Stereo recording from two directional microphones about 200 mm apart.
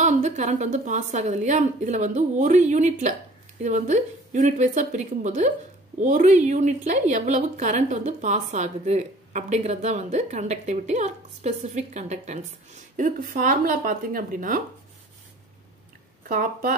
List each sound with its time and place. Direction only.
0.0 s a woman's voice: 35° right (ahead or behind)
16.3 s speech: 45° right (ahead or behind)